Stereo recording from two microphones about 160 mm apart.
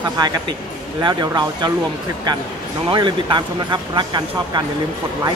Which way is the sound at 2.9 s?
30° right (ahead or behind).